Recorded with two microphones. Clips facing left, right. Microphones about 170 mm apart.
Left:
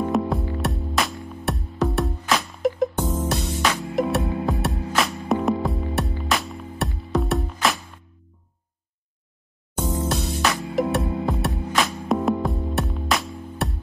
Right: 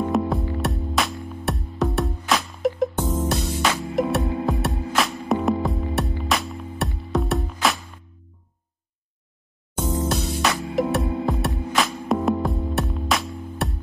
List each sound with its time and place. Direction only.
0.0 s music: centre (ahead or behind)
10.0 s music: centre (ahead or behind)